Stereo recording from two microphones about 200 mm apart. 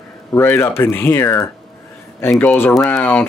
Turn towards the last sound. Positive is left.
turn(degrees=5)  # may be behind; listen again after turning